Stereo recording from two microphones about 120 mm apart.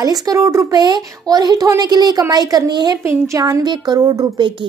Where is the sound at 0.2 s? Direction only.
30° right (ahead or behind).